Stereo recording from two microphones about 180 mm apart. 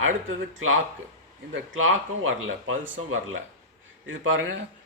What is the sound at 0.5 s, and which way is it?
Speech, 90° right.